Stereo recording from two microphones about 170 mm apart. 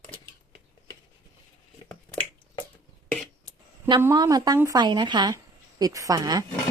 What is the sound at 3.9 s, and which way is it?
Speech, 20° right (ahead or behind).